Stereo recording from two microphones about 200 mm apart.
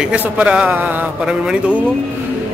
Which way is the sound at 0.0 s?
5° right (ahead or behind).